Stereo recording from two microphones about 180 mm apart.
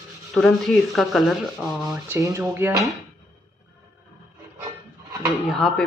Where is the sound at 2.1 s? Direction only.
15° right (ahead or behind).